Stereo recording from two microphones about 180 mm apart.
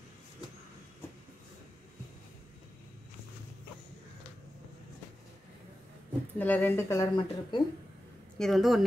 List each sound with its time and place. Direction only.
6.3 s speech: 10° left (ahead or behind)
8.4 s speech: centre (ahead or behind)